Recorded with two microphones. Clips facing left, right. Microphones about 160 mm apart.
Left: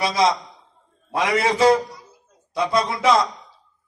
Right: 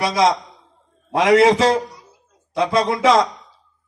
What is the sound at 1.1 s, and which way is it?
Speech, 90° right.